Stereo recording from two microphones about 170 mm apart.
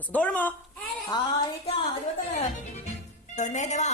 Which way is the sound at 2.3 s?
40° left (ahead or behind).